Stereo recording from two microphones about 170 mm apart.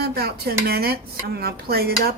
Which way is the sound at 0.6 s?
65° right (ahead or behind).